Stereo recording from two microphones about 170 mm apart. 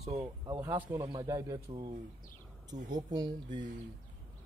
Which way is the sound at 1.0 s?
20° right (ahead or behind).